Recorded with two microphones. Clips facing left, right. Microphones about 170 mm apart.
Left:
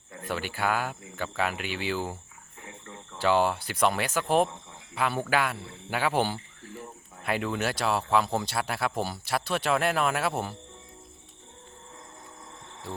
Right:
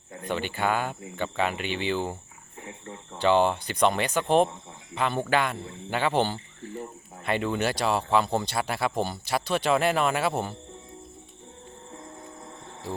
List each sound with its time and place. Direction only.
0.3 s speech: 5° left (ahead or behind)
2.6 s cricket: 30° right (ahead or behind)
3.2 s speech: 5° left (ahead or behind)